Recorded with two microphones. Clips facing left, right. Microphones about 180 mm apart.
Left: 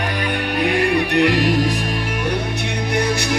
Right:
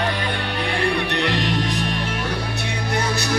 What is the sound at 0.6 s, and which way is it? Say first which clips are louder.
Music: left 5 dB; 10° left (ahead or behind).